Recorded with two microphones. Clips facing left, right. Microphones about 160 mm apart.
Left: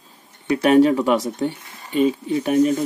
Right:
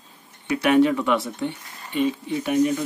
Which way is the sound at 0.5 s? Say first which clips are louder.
Left 4 dB; 40° left (ahead or behind).